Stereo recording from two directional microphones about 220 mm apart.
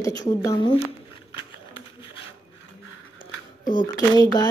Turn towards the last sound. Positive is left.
turn(degrees=15)  # may be behind; listen again after turning